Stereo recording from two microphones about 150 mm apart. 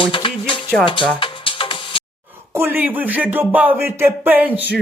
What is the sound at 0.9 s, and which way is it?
Music, 35° left (ahead or behind).